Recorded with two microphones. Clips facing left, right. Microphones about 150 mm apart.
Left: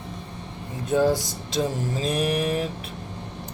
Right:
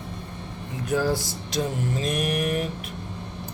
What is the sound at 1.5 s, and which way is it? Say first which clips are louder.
Vehicle: left 1 dB; 30° left (ahead or behind).